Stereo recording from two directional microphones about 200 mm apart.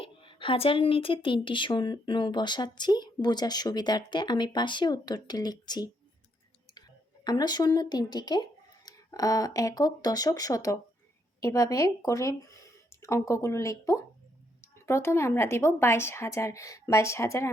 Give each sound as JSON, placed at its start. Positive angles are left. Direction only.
{"t": 0.0, "sound": "a woman's voice", "side_deg": 25}
{"t": 7.3, "sound": "a woman's voice", "side_deg": 20}